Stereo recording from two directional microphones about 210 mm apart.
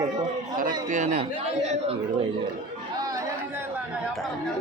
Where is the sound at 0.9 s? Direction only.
40° right (ahead or behind).